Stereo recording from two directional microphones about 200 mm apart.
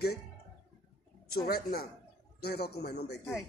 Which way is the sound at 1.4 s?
50° left (ahead or behind).